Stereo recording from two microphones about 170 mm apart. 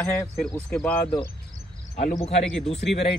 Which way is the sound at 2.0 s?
40° left (ahead or behind).